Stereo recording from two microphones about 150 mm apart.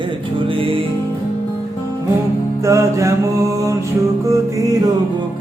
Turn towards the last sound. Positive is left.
turn(degrees=-20)  # may be behind; listen again after turning